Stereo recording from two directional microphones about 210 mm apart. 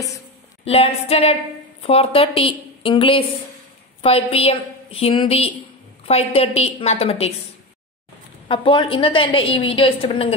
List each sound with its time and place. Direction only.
0.7 s a woman's voice: 30° left (ahead or behind)
8.5 s a woman's voice: 25° left (ahead or behind)